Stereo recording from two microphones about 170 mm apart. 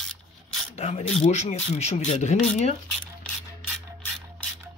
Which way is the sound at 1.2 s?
40° left (ahead or behind).